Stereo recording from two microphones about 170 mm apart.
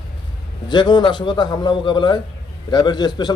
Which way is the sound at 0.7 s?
25° left (ahead or behind).